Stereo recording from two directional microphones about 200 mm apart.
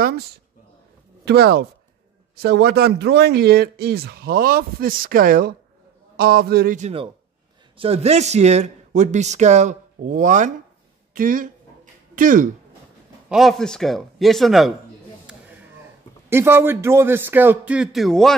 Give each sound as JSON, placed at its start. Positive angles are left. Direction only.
{"t": 1.2, "sound": "speech", "side_deg": -55}
{"t": 7.7, "sound": "a man's voice", "side_deg": -30}
{"t": 11.1, "sound": "a sound", "side_deg": -45}
{"t": 13.3, "sound": "a man's voice", "side_deg": 0}
{"t": 16.3, "sound": "a man's voice", "side_deg": -10}